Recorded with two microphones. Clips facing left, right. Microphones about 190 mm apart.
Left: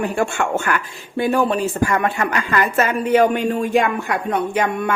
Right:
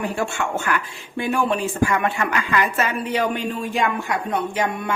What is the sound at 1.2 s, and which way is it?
A woman's voice, 40° left (ahead or behind).